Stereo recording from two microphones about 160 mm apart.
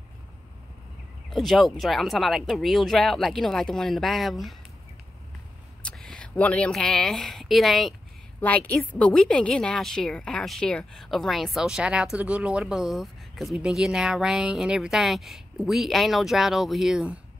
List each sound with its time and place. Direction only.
1.3 s a woman's voice: centre (ahead or behind)
5.8 s a woman's voice: 5° left (ahead or behind)